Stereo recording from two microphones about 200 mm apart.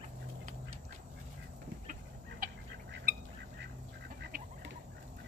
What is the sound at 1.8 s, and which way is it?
Chicken, 45° right (ahead or behind).